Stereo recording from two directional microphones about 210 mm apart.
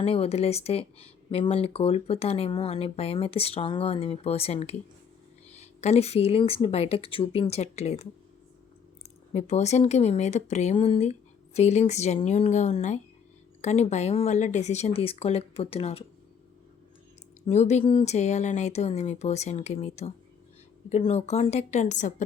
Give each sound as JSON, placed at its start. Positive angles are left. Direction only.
{"t": 0.0, "sound": "speech", "side_deg": 30}
{"t": 9.3, "sound": "speech", "side_deg": 30}
{"t": 17.4, "sound": "speech", "side_deg": 30}